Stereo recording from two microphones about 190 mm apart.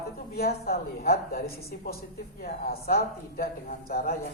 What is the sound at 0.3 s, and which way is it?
A man's voice, 55° left (ahead or behind).